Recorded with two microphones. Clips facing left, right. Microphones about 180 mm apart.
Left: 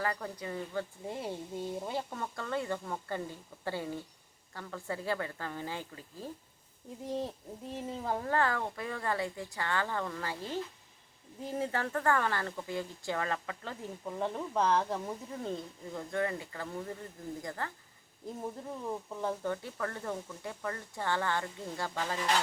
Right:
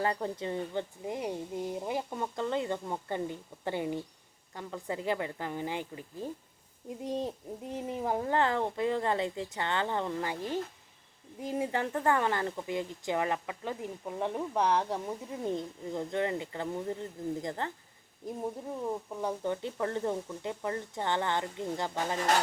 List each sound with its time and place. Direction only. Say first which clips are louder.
0.0 s speech: right 4 dB; 25° right (ahead or behind)
19.2 s speech: right 2 dB; 15° right (ahead or behind)